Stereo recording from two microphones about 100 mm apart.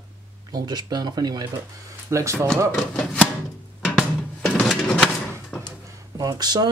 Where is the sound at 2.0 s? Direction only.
30° right (ahead or behind).